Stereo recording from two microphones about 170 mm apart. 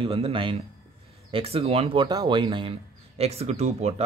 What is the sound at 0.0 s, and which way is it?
Speech, 30° right (ahead or behind).